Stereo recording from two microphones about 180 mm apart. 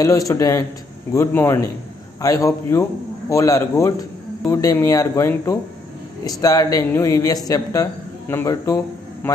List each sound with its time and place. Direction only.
0.0 s a man's voice: 20° left (ahead or behind)